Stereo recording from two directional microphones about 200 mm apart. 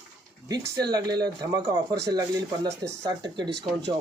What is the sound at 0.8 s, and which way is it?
Speech, 20° right (ahead or behind).